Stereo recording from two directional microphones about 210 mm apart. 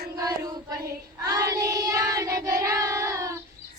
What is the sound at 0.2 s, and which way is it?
Child singing, 15° right (ahead or behind).